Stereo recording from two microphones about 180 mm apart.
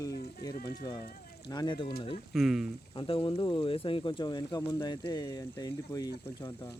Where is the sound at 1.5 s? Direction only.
20° left (ahead or behind).